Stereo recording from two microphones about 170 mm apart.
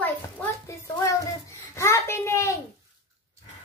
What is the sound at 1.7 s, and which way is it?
Speech, 15° left (ahead or behind).